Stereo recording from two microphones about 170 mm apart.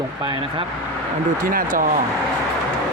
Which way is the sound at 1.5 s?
55° right (ahead or behind).